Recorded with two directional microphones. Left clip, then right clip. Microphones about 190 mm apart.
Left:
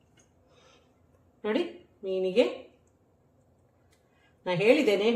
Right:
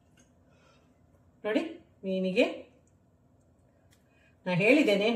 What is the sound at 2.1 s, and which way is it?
Speech, 30° left (ahead or behind).